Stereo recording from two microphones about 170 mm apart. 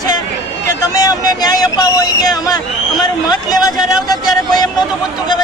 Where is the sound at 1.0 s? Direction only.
20° left (ahead or behind).